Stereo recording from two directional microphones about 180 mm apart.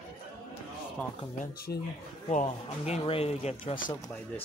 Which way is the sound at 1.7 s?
60° left (ahead or behind).